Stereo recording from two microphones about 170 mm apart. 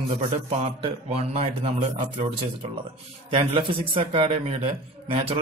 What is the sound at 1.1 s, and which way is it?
Speech, 40° right (ahead or behind).